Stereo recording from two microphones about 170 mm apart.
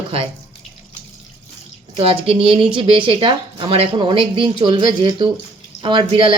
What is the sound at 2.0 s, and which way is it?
Speech, 35° right (ahead or behind).